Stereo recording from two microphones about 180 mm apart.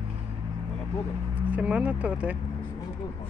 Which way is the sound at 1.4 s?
10° right (ahead or behind).